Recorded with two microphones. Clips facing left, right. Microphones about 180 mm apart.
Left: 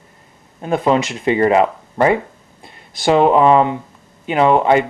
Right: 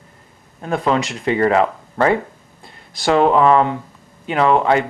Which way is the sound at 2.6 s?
Centre (ahead or behind).